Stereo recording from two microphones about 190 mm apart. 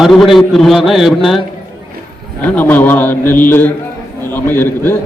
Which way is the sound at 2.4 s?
10° left (ahead or behind).